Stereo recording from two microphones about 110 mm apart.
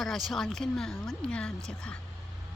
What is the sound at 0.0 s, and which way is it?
A woman's voice, centre (ahead or behind).